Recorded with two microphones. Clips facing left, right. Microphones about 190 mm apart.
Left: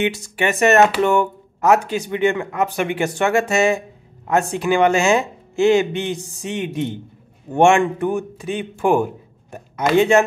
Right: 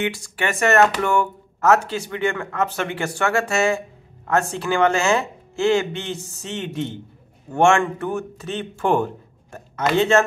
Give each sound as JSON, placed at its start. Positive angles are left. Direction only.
{"t": 0.0, "sound": "speech", "side_deg": 20}